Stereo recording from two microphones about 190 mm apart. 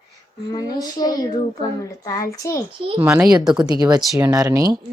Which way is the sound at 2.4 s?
15° left (ahead or behind).